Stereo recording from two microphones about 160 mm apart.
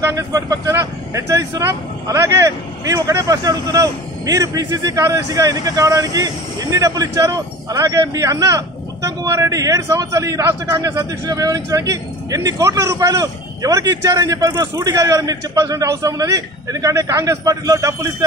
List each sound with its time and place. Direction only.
0.0 s speech: 20° right (ahead or behind)